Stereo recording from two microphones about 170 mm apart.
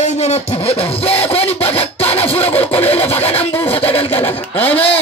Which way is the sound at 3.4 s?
10° left (ahead or behind).